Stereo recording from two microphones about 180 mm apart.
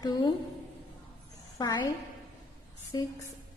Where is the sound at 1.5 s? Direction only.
20° left (ahead or behind).